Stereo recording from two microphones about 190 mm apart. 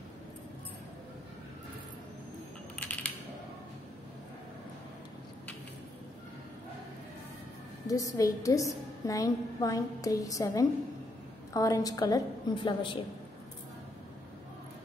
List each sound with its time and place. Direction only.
7.8 s a woman's voice: 15° left (ahead or behind)